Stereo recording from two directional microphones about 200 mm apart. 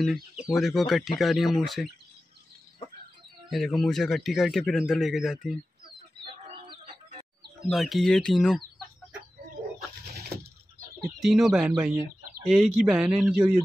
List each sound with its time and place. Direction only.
0.0 s a man's voice: centre (ahead or behind)
3.4 s a man's voice: centre (ahead or behind)
6.2 s music: 30° right (ahead or behind)
7.7 s a man's voice: centre (ahead or behind)
10.1 s a sound: 50° right (ahead or behind)
11.1 s a man's voice: centre (ahead or behind)